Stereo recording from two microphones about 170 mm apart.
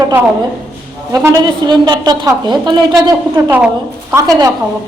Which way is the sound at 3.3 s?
15° right (ahead or behind).